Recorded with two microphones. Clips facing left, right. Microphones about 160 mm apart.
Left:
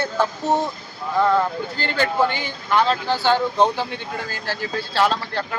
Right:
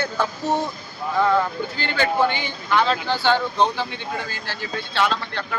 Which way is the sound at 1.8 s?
35° left (ahead or behind).